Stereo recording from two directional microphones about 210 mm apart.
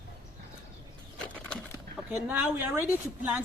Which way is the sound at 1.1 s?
5° left (ahead or behind).